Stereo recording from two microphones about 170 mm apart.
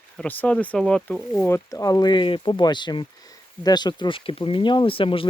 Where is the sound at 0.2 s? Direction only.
10° left (ahead or behind).